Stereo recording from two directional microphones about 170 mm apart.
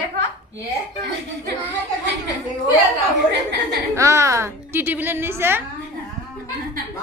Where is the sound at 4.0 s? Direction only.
15° right (ahead or behind).